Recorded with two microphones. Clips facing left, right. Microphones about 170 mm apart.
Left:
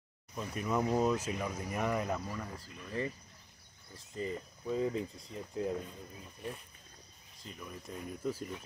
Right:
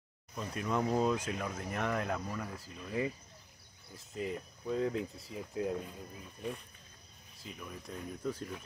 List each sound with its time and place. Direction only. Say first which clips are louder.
0.4 s speech: left 1 dB; 5° left (ahead or behind)
2.6 s speech: right 3 dB; 10° right (ahead or behind)
7.4 s speech: even; centre (ahead or behind)